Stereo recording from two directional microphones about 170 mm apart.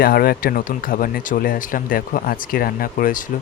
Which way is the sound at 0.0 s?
60° left (ahead or behind).